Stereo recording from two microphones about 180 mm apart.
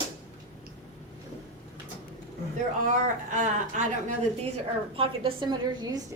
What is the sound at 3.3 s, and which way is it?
Speech, 45° right (ahead or behind).